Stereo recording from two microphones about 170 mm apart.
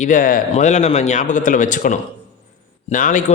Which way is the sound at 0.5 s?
45° left (ahead or behind).